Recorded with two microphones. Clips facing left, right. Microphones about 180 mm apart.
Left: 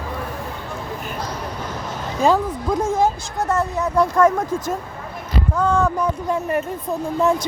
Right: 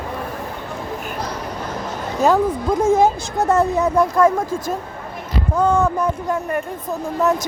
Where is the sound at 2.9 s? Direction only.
25° right (ahead or behind).